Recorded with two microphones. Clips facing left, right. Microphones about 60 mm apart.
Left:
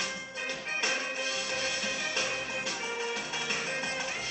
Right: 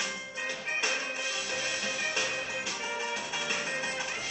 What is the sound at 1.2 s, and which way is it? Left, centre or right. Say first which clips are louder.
Music: left 1 dB; left.